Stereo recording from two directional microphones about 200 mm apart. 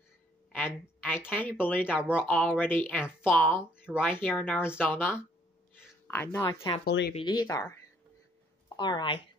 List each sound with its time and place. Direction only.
0.6 s a woman's voice: 10° left (ahead or behind)
6.8 s speech: 55° left (ahead or behind)
7.2 s speech: 20° left (ahead or behind)